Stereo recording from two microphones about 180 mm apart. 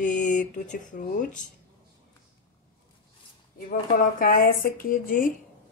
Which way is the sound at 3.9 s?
50° left (ahead or behind).